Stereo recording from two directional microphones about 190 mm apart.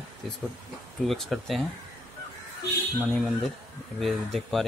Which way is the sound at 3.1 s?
Centre (ahead or behind).